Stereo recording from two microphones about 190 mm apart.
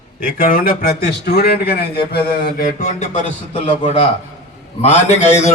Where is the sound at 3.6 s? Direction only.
25° left (ahead or behind).